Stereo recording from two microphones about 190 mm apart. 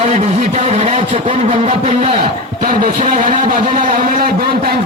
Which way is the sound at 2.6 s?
45° right (ahead or behind).